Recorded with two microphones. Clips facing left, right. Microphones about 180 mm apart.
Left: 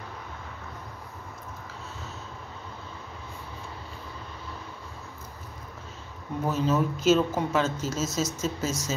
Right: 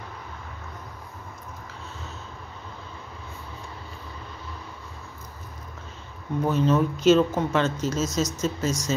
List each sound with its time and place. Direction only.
6.5 s speech: 5° left (ahead or behind)